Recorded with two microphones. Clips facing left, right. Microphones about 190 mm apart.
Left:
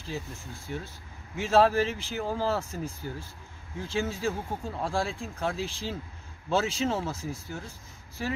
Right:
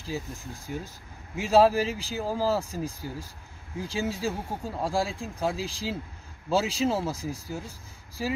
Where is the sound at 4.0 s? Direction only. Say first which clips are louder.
Even; 10° right (ahead or behind).